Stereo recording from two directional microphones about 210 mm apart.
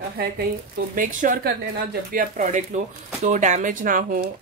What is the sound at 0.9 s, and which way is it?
Speech, 40° right (ahead or behind).